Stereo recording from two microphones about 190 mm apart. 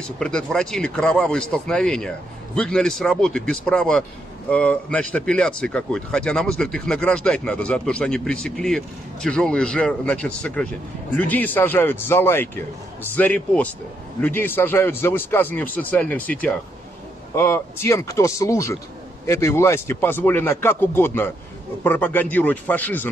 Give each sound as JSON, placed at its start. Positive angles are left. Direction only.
{"t": 0.2, "sound": "a man's voice", "side_deg": 5}